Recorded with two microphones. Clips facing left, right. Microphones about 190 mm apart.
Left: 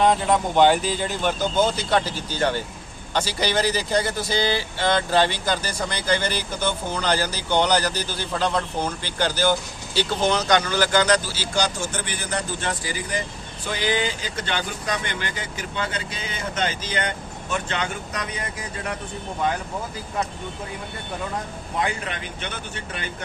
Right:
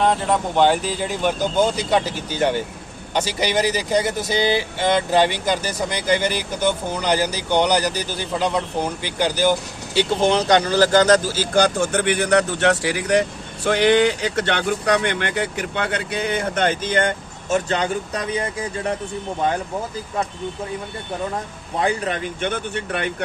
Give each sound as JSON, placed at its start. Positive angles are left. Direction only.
{"t": 0.0, "sound": "speech", "side_deg": 0}
{"t": 21.8, "sound": "speech", "side_deg": -35}